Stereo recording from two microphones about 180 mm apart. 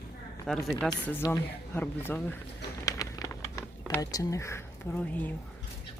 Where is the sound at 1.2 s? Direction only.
15° left (ahead or behind).